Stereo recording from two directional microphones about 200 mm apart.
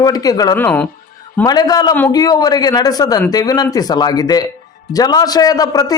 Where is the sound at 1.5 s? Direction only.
20° left (ahead or behind).